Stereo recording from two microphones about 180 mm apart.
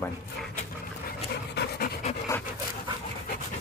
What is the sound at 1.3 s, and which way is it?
Pant, 65° left (ahead or behind).